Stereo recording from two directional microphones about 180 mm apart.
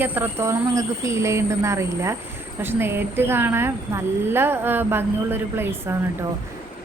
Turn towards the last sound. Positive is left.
turn(degrees=-15)  # may be behind; listen again after turning